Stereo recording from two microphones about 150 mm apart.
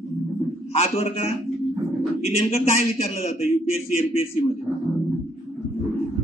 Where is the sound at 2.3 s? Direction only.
45° left (ahead or behind).